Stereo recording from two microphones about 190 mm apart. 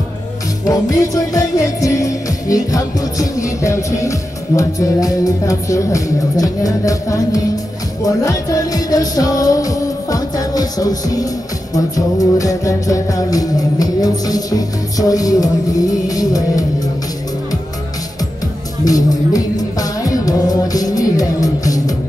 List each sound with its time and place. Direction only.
0.7 s music: 15° left (ahead or behind)
18.9 s music: 20° left (ahead or behind)